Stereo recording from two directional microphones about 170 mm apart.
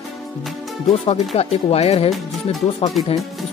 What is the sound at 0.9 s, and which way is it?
Speech, 35° left (ahead or behind).